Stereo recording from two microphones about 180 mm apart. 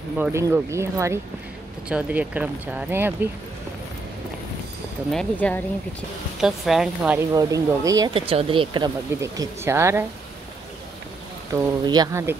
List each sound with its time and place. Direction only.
0.2 s speech: 15° right (ahead or behind)
5.1 s speech: 10° left (ahead or behind)
6.4 s speech: centre (ahead or behind)
7.2 s speech: 20° right (ahead or behind)
8.3 s speech: 30° right (ahead or behind); by 10.0 s 15° right (ahead or behind)
11.8 s speech: 20° right (ahead or behind)